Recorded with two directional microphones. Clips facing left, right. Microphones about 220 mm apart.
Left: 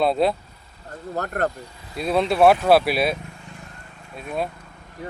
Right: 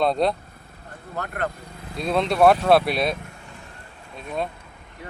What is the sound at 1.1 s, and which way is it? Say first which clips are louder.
Speech: left 4 dB; 40° left (ahead or behind).